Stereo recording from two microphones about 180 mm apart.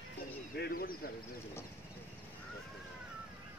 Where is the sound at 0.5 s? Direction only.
55° left (ahead or behind).